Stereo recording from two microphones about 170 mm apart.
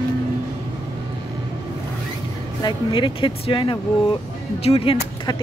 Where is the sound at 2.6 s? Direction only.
30° left (ahead or behind).